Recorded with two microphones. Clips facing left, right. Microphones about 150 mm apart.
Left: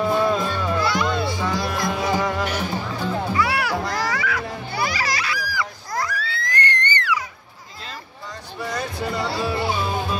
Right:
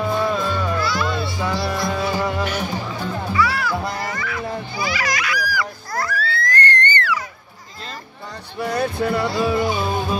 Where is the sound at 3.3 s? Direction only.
60° left (ahead or behind).